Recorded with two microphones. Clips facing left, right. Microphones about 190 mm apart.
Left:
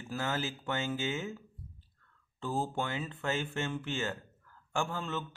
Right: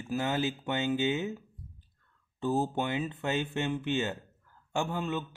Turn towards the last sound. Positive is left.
turn(degrees=-15)  # may be behind; listen again after turning